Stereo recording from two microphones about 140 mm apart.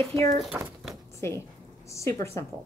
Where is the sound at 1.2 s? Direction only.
20° left (ahead or behind).